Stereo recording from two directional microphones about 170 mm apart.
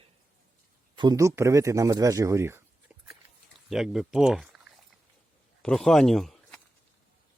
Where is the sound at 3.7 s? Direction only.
Centre (ahead or behind).